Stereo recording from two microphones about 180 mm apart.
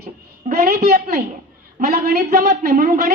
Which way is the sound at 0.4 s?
55° right (ahead or behind).